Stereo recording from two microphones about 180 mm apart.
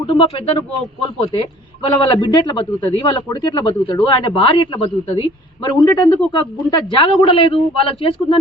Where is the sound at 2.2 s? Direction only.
25° left (ahead or behind).